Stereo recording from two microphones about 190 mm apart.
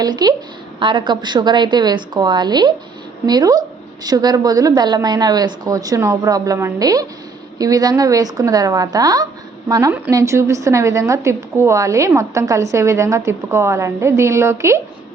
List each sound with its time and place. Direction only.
0.0 s a woman's voice: 20° right (ahead or behind)